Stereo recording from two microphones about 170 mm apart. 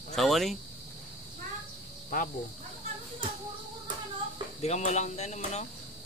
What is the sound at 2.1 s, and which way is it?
Speech, 55° left (ahead or behind).